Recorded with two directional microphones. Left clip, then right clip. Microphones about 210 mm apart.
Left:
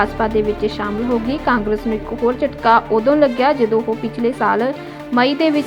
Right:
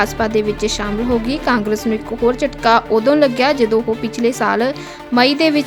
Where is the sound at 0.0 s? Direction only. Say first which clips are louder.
Even; 35° right (ahead or behind).